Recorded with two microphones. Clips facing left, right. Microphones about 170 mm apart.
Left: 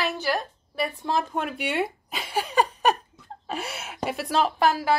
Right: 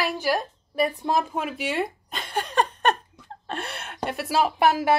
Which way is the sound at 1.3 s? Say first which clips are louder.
Even; centre (ahead or behind).